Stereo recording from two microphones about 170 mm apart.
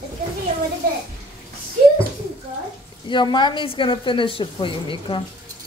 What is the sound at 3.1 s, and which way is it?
A woman's voice, 25° left (ahead or behind).